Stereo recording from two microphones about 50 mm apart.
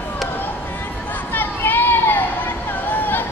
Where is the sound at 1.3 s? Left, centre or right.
Left.